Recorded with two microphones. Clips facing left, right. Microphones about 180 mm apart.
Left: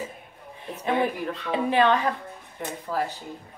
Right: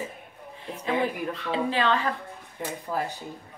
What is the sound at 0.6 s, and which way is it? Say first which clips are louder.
Speech: left 2 dB; 15° left (ahead or behind).